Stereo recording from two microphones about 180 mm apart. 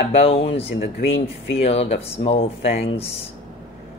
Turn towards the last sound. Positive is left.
turn(degrees=35)  # may be behind; listen again after turning